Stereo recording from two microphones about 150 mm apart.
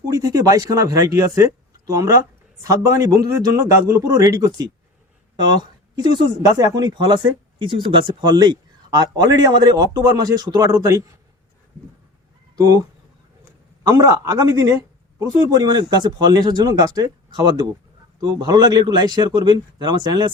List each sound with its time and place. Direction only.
0.0 s speech: 20° right (ahead or behind)
6.0 s speech: 30° right (ahead or behind)
12.5 s speech: 25° right (ahead or behind)
13.8 s speech: 25° right (ahead or behind)